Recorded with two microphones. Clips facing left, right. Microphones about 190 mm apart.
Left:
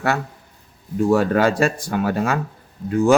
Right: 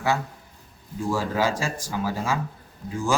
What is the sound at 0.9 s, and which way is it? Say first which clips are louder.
Speech: left 8 dB; 65° left (ahead or behind).